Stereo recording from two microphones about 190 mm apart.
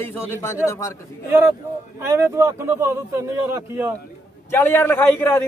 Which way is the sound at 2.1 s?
15° right (ahead or behind).